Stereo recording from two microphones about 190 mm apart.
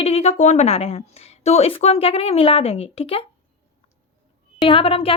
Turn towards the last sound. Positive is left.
turn(degrees=30)  # may be behind; listen again after turning